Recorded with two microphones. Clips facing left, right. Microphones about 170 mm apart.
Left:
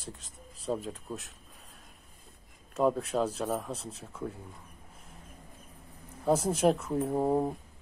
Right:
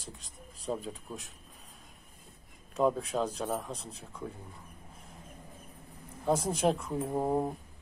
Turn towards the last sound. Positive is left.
turn(degrees=0)  # may be behind; listen again after turning